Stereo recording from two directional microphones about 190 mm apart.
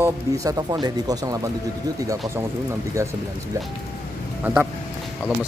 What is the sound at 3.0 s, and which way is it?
Speech, 15° right (ahead or behind).